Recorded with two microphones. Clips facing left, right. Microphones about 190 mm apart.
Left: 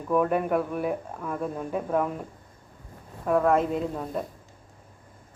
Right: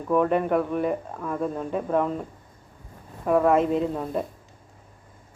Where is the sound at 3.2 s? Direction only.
5° right (ahead or behind).